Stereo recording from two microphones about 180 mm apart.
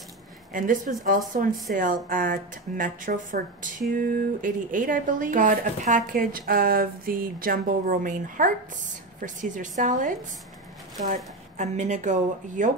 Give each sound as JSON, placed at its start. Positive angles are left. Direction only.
{"t": 0.5, "sound": "a woman's voice", "side_deg": -50}
{"t": 11.5, "sound": "speech", "side_deg": -40}